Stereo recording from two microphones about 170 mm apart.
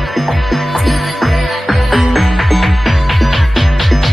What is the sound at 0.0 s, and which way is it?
Music, centre (ahead or behind).